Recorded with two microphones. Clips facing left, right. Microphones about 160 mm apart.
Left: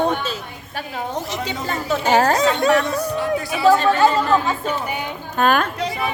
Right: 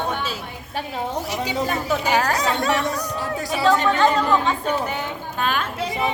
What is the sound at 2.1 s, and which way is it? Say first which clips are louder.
Speech: left 6 dB; 35° left (ahead or behind).